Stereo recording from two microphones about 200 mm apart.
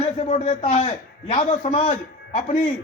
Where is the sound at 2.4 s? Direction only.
40° left (ahead or behind).